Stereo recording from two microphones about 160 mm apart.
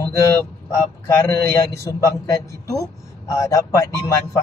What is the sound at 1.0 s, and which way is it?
A man's voice, 15° left (ahead or behind).